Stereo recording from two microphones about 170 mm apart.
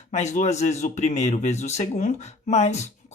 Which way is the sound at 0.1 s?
40° left (ahead or behind).